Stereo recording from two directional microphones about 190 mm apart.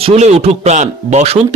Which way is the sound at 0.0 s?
35° right (ahead or behind).